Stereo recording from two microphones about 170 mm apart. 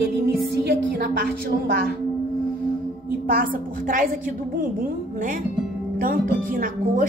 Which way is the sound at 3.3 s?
55° right (ahead or behind).